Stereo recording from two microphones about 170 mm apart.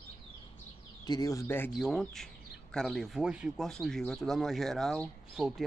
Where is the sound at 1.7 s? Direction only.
Centre (ahead or behind).